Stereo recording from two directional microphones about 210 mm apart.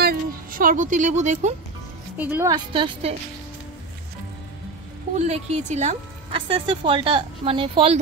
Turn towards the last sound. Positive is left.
turn(degrees=-25)  # may be behind; listen again after turning